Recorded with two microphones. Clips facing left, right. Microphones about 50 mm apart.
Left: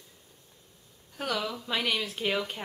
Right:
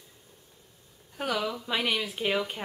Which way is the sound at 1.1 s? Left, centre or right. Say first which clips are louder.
Right 2 dB; centre.